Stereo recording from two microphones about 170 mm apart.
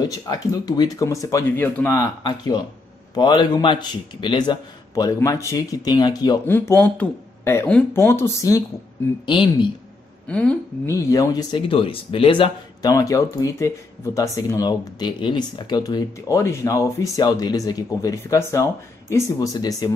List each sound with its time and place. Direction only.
0.3 s speech: 25° left (ahead or behind)
6.4 s speech: 15° left (ahead or behind)
9.2 s speech: 30° left (ahead or behind)
10.2 s a woman's voice: 5° left (ahead or behind)
10.9 s speech: 20° left (ahead or behind)
12.9 s speech: 20° left (ahead or behind)